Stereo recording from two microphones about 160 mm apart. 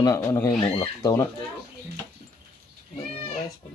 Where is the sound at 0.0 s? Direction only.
20° left (ahead or behind).